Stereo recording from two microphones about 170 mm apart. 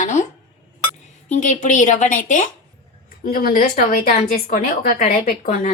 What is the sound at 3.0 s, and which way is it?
Speech, 60° left (ahead or behind).